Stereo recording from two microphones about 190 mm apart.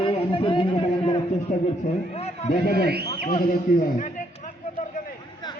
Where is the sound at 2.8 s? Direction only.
55° right (ahead or behind).